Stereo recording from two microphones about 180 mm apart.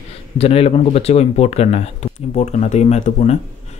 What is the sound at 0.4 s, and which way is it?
Speech, 35° left (ahead or behind).